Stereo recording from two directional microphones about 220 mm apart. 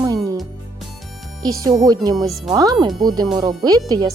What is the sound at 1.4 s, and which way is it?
Speech, 15° right (ahead or behind).